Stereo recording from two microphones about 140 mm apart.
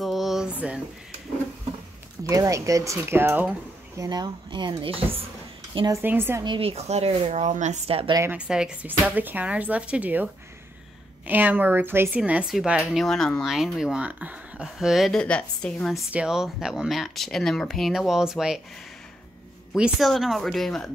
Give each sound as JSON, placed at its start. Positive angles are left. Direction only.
{"t": 0.0, "sound": "a sound", "side_deg": 0}
{"t": 2.2, "sound": "speech", "side_deg": -25}
{"t": 3.9, "sound": "speech", "side_deg": -25}
{"t": 5.9, "sound": "speech", "side_deg": -15}
{"t": 6.4, "sound": "speech", "side_deg": -40}
{"t": 8.3, "sound": "speech", "side_deg": -5}
{"t": 16.1, "sound": "speech", "side_deg": -5}
{"t": 19.7, "sound": "speech", "side_deg": 0}